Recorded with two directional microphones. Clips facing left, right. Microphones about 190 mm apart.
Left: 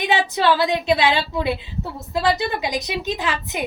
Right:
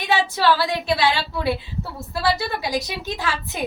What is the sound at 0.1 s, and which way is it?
A woman's voice, 20° left (ahead or behind).